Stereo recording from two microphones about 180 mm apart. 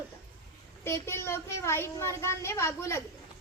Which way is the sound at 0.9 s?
15° left (ahead or behind).